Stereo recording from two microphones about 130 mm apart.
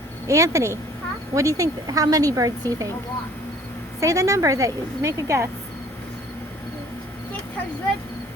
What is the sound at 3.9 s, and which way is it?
Speech, 25° right (ahead or behind).